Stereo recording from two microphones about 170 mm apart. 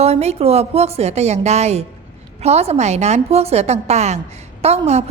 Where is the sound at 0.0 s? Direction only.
40° right (ahead or behind).